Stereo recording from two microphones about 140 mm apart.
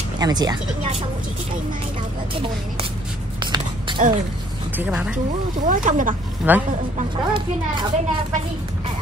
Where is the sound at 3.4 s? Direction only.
35° right (ahead or behind).